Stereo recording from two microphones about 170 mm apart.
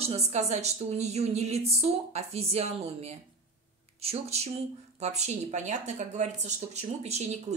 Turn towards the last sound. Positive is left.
turn(degrees=-40)  # may be behind; listen again after turning